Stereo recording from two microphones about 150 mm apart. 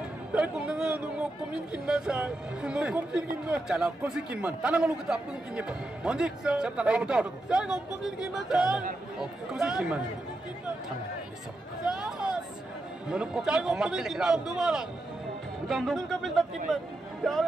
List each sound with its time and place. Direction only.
0.3 s a man's voice: 5° right (ahead or behind)
11.8 s run: 5° right (ahead or behind)
13.1 s a man's voice: 5° right (ahead or behind)